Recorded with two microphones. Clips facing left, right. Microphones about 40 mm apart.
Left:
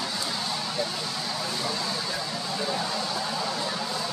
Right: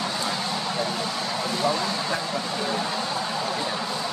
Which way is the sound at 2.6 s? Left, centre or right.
Centre.